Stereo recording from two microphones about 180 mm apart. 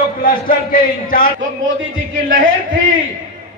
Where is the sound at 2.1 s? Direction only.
50° right (ahead or behind).